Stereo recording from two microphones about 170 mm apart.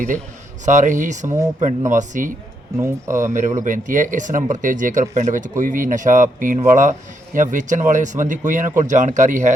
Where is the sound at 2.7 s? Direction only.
15° right (ahead or behind).